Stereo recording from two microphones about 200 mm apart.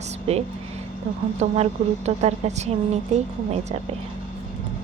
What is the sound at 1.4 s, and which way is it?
A woman's voice, 30° right (ahead or behind).